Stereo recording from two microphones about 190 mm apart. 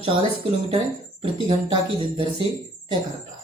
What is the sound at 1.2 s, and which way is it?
Speech, 30° right (ahead or behind).